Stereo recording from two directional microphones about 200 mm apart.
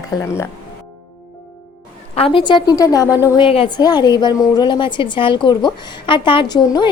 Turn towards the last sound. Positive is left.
turn(degrees=20)  # may be behind; listen again after turning